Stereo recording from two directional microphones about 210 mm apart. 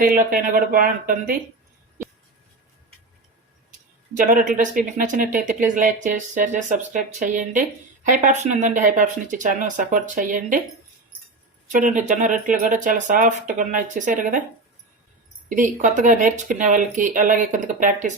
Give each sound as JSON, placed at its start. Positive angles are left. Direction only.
{"t": 0.3, "sound": "speech", "side_deg": -45}
{"t": 4.2, "sound": "speech", "side_deg": -40}
{"t": 11.7, "sound": "speech", "side_deg": -35}
{"t": 15.4, "sound": "speech", "side_deg": -35}